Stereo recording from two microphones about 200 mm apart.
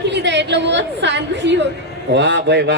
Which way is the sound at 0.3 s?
60° right (ahead or behind).